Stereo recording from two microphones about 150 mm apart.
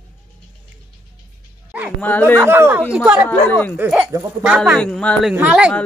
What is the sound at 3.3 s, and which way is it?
Speech, 15° left (ahead or behind).